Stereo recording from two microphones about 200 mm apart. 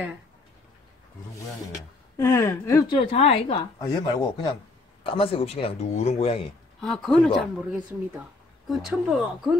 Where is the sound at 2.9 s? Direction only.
25° left (ahead or behind).